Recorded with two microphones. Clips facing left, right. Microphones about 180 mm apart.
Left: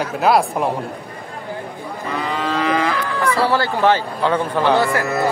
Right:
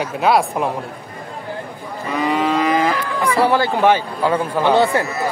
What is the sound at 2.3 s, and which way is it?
Livestock, 10° right (ahead or behind).